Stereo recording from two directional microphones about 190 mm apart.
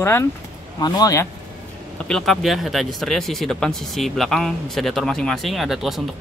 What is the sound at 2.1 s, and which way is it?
Speech, centre (ahead or behind).